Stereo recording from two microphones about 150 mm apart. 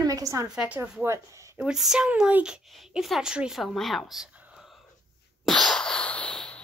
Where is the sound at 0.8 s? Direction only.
15° right (ahead or behind).